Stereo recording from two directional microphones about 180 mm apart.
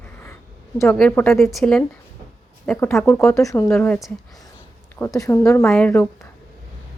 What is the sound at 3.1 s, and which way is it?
Speech, 15° left (ahead or behind).